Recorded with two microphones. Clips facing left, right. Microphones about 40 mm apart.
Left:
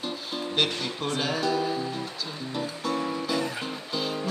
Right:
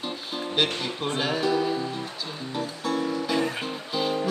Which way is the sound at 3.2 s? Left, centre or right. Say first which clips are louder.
Right 3 dB; right.